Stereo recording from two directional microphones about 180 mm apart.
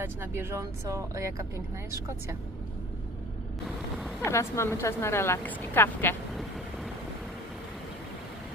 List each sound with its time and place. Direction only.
0.0 s speech: 15° right (ahead or behind)
4.2 s a woman's voice: 15° left (ahead or behind)